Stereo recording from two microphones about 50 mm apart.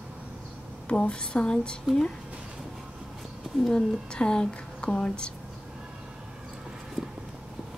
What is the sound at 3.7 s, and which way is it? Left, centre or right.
A woman's voice, centre.